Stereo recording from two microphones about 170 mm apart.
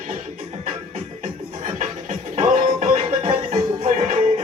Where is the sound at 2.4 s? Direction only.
45° right (ahead or behind).